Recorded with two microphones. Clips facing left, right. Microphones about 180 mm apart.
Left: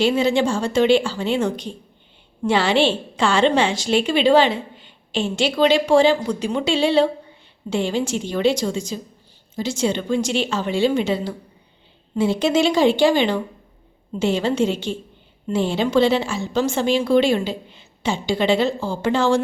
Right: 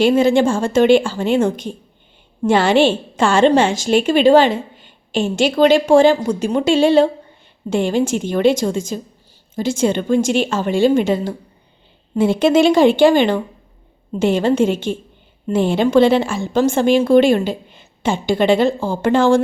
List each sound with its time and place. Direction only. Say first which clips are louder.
0.0 s a woman's voice: right 5 dB; 50° right (ahead or behind)